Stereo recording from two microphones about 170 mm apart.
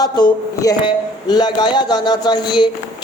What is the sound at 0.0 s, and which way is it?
A man's voice, 20° left (ahead or behind).